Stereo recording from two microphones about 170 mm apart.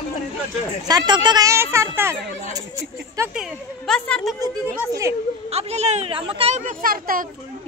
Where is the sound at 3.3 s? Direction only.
Centre (ahead or behind).